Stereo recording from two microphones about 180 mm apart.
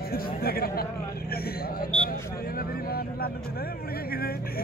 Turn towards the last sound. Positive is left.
turn(degrees=55)  # may be behind; listen again after turning